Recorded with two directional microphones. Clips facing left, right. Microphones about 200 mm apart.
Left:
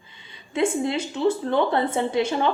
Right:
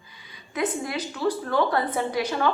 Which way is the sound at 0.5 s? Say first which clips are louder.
Left 5 dB; 25° left (ahead or behind).